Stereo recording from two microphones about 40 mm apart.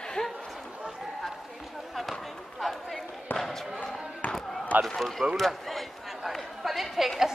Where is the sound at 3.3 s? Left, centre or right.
Centre.